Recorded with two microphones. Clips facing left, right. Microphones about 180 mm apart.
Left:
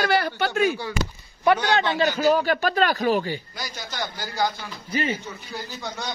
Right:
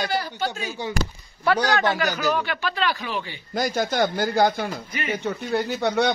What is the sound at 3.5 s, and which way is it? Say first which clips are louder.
Speech: right 12 dB; 50° right (ahead or behind).